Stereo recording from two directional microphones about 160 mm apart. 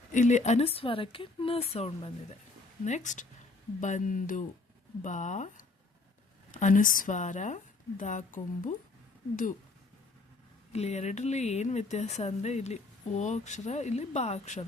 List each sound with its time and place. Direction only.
0.1 s speech: 50° left (ahead or behind)
2.8 s speech: 50° left (ahead or behind)
10.7 s speech: 45° left (ahead or behind)